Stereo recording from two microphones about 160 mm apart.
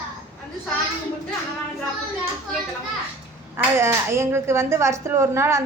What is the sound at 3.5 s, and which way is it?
Speech, 15° right (ahead or behind).